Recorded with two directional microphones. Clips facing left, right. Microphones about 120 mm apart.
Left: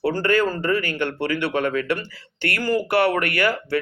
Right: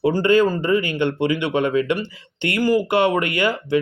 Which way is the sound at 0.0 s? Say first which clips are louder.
Right 4 dB; 20° right (ahead or behind).